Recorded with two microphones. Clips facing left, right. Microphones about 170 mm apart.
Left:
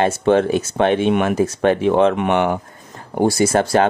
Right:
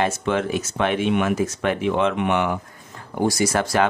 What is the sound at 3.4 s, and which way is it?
Speech, 30° left (ahead or behind).